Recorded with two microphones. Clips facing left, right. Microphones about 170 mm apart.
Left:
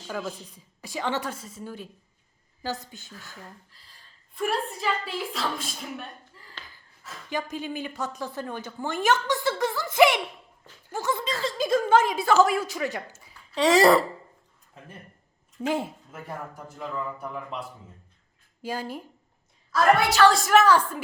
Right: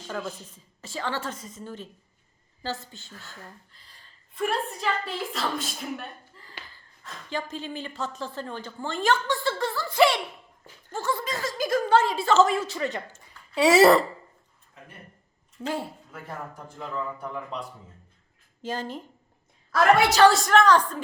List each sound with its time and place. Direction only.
0.1 s speech: 5° left (ahead or behind)
4.4 s a woman's voice: centre (ahead or behind); by 10.2 s 20° left (ahead or behind)
10.8 s a sound: 15° left (ahead or behind)
11.4 s speech: 25° left (ahead or behind); by 13.6 s 5° left (ahead or behind)
13.6 s a woman's voice: 5° right (ahead or behind)
15.6 s speech: 15° left (ahead or behind)
16.6 s speech: 5° left (ahead or behind)
18.6 s speech: 10° left (ahead or behind)
20.3 s speech: 5° left (ahead or behind)